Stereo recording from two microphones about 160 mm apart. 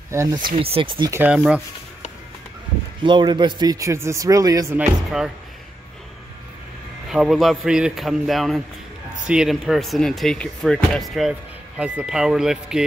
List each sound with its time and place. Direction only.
0.1 s speech: 20° right (ahead or behind)
0.5 s speech: 35° right (ahead or behind)
1.1 s speech: 10° right (ahead or behind)
3.0 s speech: 30° right (ahead or behind)
4.7 s speech: 5° right (ahead or behind)
7.1 s speech: centre (ahead or behind)